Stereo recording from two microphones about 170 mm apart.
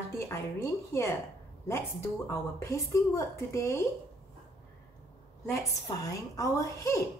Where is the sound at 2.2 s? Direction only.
15° left (ahead or behind).